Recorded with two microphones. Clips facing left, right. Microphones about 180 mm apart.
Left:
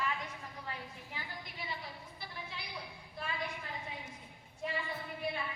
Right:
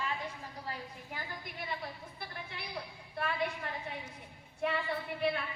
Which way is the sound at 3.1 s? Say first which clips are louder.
Right 6 dB; 65° right (ahead or behind).